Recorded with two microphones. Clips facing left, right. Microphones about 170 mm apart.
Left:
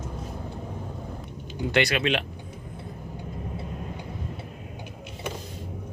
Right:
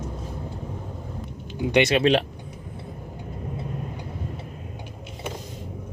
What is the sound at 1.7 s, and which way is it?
Speech, 20° right (ahead or behind).